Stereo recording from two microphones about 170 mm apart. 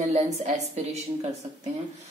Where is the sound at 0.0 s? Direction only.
40° right (ahead or behind).